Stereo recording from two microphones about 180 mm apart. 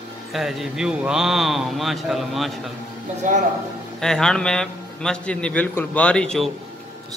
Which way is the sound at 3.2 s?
45° right (ahead or behind).